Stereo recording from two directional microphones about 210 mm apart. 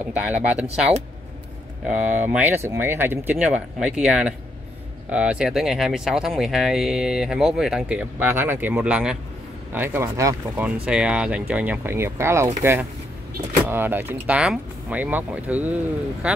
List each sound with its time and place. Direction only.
0.0 s speech: 5° right (ahead or behind)
1.9 s speech: 5° right (ahead or behind)